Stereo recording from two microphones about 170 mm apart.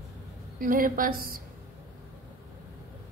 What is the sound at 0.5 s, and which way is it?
Female singing, 55° right (ahead or behind).